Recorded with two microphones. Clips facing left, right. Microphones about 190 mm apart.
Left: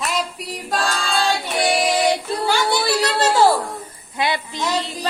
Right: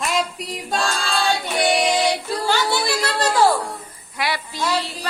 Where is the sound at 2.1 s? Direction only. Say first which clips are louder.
Left 2 dB; 20° left (ahead or behind).